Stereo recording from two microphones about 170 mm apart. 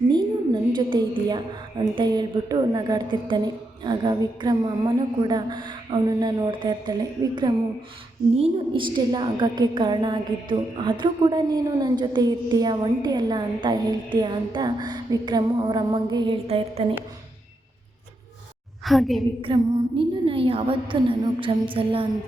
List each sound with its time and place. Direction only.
0.1 s a sound: 25° right (ahead or behind)
2.0 s a woman's voice: 25° right (ahead or behind)
8.4 s a woman's voice: 30° right (ahead or behind)
18.9 s a woman's voice: centre (ahead or behind)
19.5 s a woman's voice: 30° right (ahead or behind)